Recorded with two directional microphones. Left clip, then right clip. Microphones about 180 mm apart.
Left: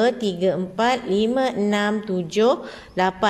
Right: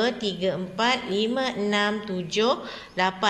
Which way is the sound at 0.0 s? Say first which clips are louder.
Left 5 dB; 60° left (ahead or behind).